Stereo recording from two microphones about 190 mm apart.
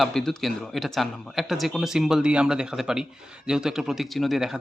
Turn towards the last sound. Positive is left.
turn(degrees=0)  # may be behind; listen again after turning